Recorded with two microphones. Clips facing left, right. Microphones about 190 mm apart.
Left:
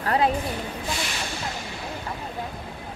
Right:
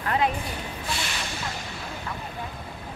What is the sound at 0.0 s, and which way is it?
Speech, 35° left (ahead or behind).